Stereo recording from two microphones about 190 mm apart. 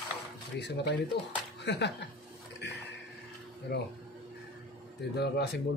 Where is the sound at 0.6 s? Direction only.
65° left (ahead or behind).